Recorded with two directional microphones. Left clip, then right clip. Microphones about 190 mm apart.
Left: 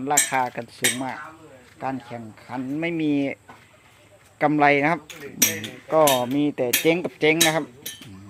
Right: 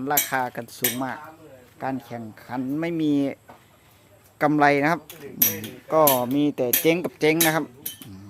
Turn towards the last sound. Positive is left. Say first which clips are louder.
# left 1 dB
turn(degrees=-15)  # may be behind; listen again after turning